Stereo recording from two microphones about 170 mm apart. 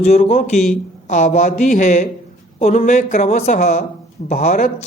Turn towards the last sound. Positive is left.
turn(degrees=45)  # may be behind; listen again after turning